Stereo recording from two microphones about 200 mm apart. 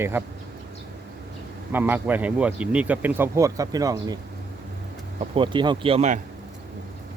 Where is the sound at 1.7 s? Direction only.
10° right (ahead or behind).